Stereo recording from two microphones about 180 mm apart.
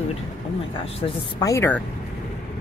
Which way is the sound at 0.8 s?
30° left (ahead or behind).